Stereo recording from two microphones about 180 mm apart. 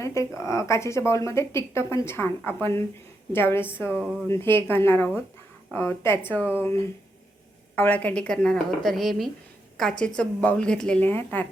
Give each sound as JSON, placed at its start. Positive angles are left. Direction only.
{"t": 0.0, "sound": "speech", "side_deg": 15}
{"t": 3.9, "sound": "speech", "side_deg": -5}
{"t": 4.3, "sound": "speech", "side_deg": 15}
{"t": 7.8, "sound": "a woman's voice", "side_deg": 10}